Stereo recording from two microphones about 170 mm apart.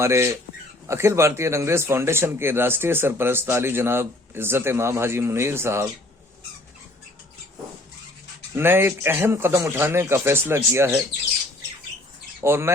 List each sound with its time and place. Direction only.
0.0 s speech: 15° right (ahead or behind)
8.5 s speech: 15° right (ahead or behind)
12.4 s speech: 15° right (ahead or behind)